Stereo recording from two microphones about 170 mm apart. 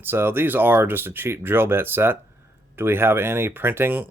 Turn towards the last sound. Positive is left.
turn(degrees=-10)  # may be behind; listen again after turning